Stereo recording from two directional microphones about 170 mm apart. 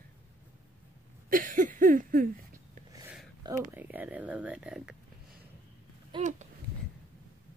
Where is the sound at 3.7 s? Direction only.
10° right (ahead or behind).